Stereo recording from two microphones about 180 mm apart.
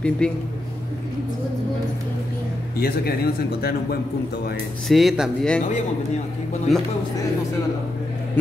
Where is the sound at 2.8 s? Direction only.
60° left (ahead or behind).